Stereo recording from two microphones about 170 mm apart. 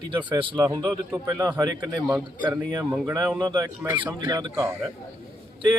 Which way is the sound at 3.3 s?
20° right (ahead or behind).